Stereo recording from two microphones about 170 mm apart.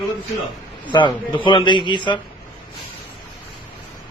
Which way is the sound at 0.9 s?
30° left (ahead or behind).